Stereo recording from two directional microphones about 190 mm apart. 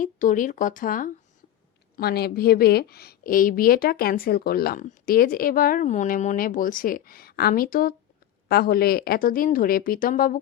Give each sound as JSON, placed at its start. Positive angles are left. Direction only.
{"t": 0.0, "sound": "a woman's voice", "side_deg": 45}